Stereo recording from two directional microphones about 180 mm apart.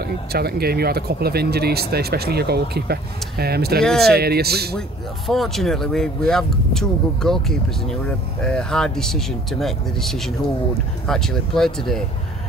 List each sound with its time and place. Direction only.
0.0 s speech: 60° right (ahead or behind)
3.8 s speech: centre (ahead or behind)
4.1 s speech: 60° right (ahead or behind)
4.7 s speech: centre (ahead or behind)